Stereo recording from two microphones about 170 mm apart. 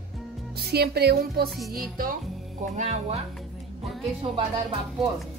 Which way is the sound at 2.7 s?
40° right (ahead or behind).